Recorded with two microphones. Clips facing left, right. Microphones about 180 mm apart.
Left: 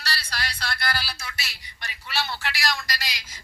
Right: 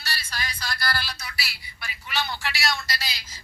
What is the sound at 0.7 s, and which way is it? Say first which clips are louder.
Speech: right 2 dB; 25° left (ahead or behind).